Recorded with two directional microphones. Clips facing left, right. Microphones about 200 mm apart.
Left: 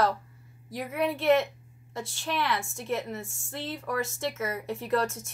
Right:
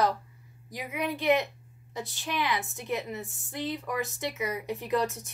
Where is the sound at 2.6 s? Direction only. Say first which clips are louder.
Left 1 dB; 20° right (ahead or behind).